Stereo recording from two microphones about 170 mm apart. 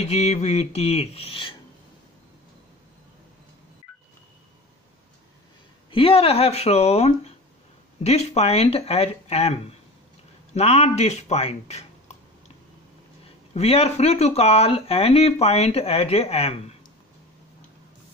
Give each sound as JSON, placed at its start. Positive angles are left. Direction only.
{"t": 0.0, "sound": "speech", "side_deg": 40}
{"t": 5.9, "sound": "speech", "side_deg": 30}